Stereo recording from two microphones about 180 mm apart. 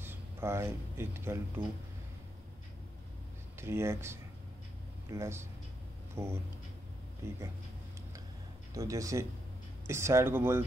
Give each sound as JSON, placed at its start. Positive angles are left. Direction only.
{"t": 0.0, "sound": "speech", "side_deg": -10}
{"t": 3.5, "sound": "speech", "side_deg": -15}
{"t": 8.7, "sound": "speech", "side_deg": -20}